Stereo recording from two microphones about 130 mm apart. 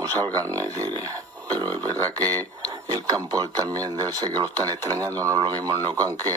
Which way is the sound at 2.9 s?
30° right (ahead or behind).